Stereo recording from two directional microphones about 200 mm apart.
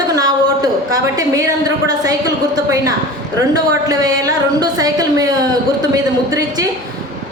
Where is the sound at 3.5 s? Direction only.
20° right (ahead or behind).